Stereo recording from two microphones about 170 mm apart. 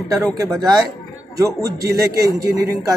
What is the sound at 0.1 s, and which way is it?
A man's voice, 15° right (ahead or behind).